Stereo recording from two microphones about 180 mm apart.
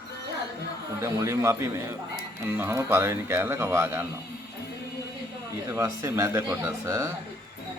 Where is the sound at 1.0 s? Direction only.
15° right (ahead or behind).